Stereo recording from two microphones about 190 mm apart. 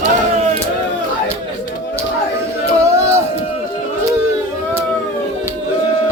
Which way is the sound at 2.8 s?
15° right (ahead or behind).